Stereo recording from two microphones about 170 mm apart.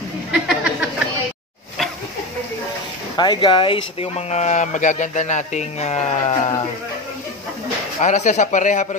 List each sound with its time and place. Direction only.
0.3 s a sound: 5° right (ahead or behind)
3.2 s speech: 25° left (ahead or behind)
8.0 s speech: 45° left (ahead or behind)